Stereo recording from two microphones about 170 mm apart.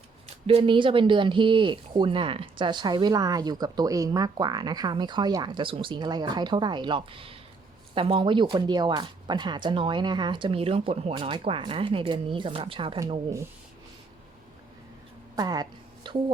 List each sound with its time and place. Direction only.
0.4 s speech: 30° right (ahead or behind)
15.4 s speech: 25° right (ahead or behind)